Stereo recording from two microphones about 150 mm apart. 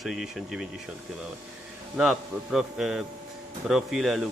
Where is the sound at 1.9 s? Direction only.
5° right (ahead or behind).